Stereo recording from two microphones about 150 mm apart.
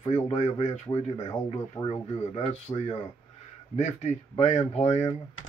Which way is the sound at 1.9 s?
45° left (ahead or behind).